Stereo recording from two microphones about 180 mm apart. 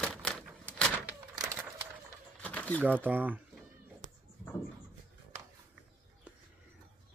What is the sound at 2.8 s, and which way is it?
Speech, 10° right (ahead or behind).